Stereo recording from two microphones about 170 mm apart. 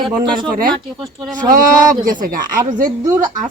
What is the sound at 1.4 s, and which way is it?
Speech, 55° right (ahead or behind).